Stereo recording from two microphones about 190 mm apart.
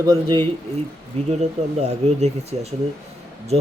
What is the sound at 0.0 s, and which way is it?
Speech, 20° right (ahead or behind).